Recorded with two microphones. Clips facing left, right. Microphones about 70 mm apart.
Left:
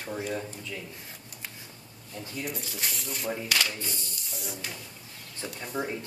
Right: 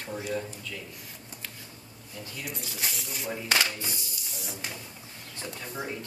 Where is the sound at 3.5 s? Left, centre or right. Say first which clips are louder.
Right 5 dB; right.